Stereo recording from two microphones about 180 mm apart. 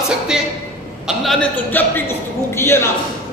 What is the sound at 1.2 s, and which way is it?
A man's voice, 10° left (ahead or behind).